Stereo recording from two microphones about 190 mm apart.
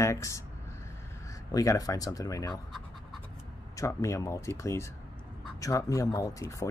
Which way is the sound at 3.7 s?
15° left (ahead or behind).